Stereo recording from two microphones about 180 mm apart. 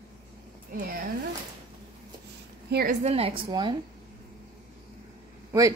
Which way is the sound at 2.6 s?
60° right (ahead or behind).